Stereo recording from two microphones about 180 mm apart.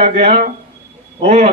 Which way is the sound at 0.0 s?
35° right (ahead or behind).